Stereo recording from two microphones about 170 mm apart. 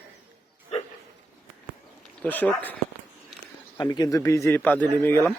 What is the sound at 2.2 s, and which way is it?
Speech, 10° left (ahead or behind).